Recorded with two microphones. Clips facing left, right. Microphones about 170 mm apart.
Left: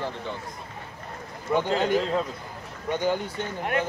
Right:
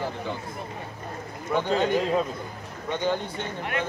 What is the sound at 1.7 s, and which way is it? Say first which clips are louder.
Speech: right 3 dB; 15° right (ahead or behind).